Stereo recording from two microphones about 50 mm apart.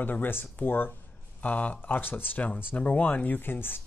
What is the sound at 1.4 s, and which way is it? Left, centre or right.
Speech, left.